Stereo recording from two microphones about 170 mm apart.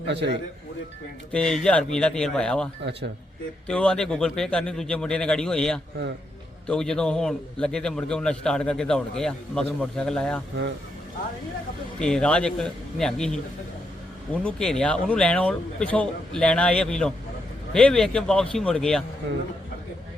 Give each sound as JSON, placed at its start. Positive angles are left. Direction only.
{"t": 0.1, "sound": "a man's voice", "side_deg": -90}
{"t": 1.3, "sound": "a man's voice", "side_deg": 5}
{"t": 3.7, "sound": "a man's voice", "side_deg": 5}
{"t": 11.9, "sound": "a man's voice", "side_deg": 5}
{"t": 14.3, "sound": "a man's voice", "side_deg": 5}